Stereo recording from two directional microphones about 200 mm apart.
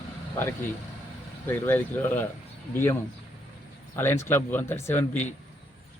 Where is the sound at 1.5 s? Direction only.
10° left (ahead or behind).